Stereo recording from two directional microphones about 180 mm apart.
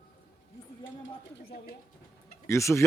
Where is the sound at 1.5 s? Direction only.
55° left (ahead or behind).